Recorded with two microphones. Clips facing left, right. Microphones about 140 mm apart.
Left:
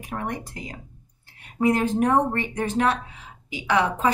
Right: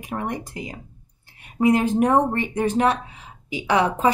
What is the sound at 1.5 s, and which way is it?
Speech, 15° right (ahead or behind).